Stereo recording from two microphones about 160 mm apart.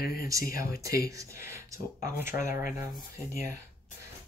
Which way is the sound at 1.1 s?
20° right (ahead or behind).